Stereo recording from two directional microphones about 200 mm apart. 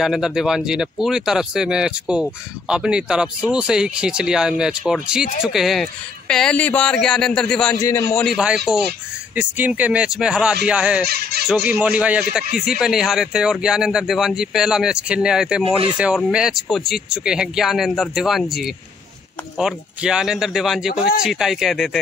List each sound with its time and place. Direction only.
0.0 s speech: centre (ahead or behind)
8.7 s speech: 5° right (ahead or behind)
11.1 s speech: 50° right (ahead or behind)
11.7 s speech: 5° right (ahead or behind)